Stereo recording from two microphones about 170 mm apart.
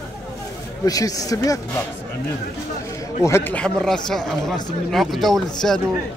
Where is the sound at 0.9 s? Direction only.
20° left (ahead or behind).